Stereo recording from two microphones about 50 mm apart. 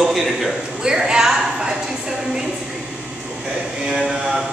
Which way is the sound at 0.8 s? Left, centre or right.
Centre.